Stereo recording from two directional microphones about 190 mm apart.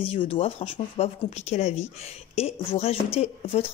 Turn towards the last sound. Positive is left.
turn(degrees=30)  # may be behind; listen again after turning